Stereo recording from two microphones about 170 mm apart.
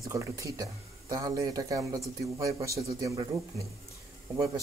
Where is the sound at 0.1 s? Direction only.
20° right (ahead or behind).